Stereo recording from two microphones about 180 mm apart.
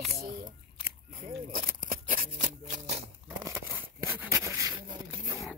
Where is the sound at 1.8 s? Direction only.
50° right (ahead or behind).